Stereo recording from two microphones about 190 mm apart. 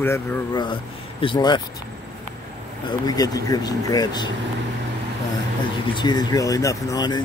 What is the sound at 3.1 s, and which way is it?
Speech, 20° left (ahead or behind).